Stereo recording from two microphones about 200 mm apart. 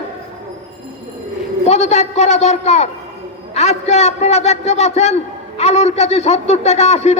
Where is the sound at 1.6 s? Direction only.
35° left (ahead or behind).